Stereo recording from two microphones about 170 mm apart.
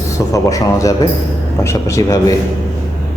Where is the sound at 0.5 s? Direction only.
20° left (ahead or behind).